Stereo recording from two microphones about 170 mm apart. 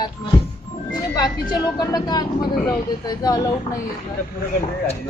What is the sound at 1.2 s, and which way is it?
A woman's voice, 25° left (ahead or behind).